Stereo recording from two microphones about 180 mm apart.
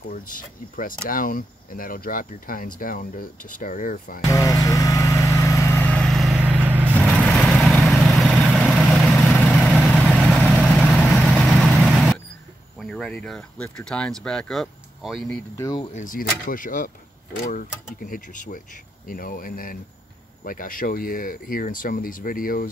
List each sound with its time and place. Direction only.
0.1 s speech: 50° left (ahead or behind)
4.2 s vehicle: 20° left (ahead or behind); by 7.1 s 10° right (ahead or behind)
7.1 s vehicle: 5° left (ahead or behind)
12.7 s speech: centre (ahead or behind)
15.5 s speech: 15° left (ahead or behind)
16.0 s speech: 50° left (ahead or behind)